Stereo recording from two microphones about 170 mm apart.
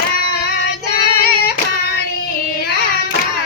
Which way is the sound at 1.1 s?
65° left (ahead or behind).